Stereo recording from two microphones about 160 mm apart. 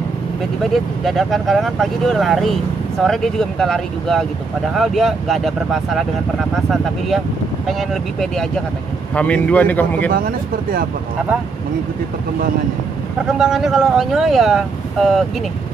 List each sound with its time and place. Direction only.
1.0 s a man's voice: centre (ahead or behind)
10.1 s speech: 65° right (ahead or behind)
13.4 s speech: 5° right (ahead or behind)